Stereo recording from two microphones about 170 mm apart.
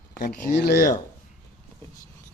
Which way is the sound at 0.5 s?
65° left (ahead or behind).